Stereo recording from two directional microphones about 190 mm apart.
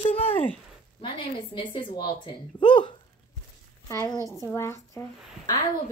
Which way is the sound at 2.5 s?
25° left (ahead or behind).